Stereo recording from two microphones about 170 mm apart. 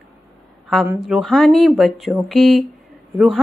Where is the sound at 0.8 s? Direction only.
5° right (ahead or behind).